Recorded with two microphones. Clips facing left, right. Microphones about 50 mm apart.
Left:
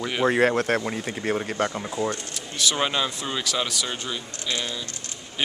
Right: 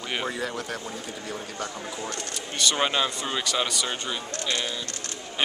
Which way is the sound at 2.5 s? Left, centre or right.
Centre.